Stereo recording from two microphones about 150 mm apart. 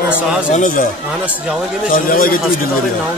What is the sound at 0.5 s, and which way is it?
Speech, 60° left (ahead or behind).